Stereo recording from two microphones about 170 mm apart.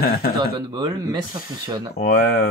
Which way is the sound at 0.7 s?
25° right (ahead or behind).